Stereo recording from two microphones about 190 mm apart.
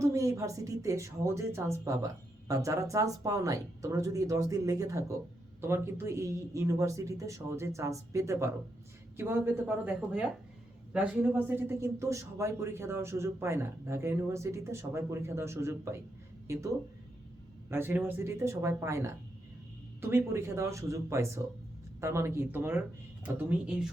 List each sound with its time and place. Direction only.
0.0 s a man's voice: 15° right (ahead or behind)